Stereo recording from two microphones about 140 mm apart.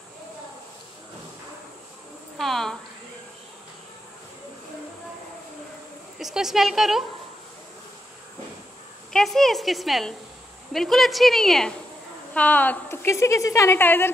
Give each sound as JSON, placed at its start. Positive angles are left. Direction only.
{"t": 2.3, "sound": "a sound", "side_deg": 0}
{"t": 6.1, "sound": "a woman's voice", "side_deg": -5}
{"t": 9.1, "sound": "a woman's voice", "side_deg": 0}